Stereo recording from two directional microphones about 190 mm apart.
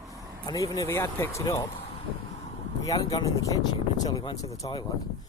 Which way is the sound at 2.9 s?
20° left (ahead or behind).